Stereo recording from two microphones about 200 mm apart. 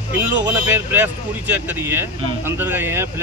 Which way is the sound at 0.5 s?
10° right (ahead or behind).